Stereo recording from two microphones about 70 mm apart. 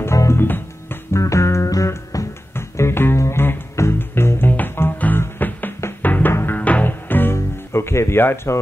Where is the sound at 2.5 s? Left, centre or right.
Left.